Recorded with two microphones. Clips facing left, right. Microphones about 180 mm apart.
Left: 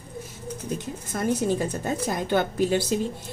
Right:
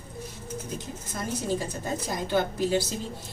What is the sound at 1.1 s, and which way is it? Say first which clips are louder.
Speech: left 6 dB; 60° left (ahead or behind).